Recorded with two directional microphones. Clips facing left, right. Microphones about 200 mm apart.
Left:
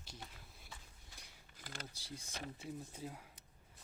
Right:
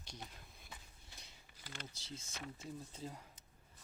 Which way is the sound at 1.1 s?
10° left (ahead or behind).